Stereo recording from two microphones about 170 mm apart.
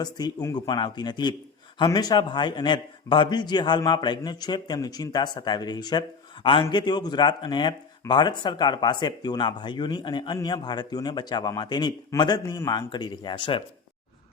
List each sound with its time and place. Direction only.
0.0 s a man's voice: 25° left (ahead or behind)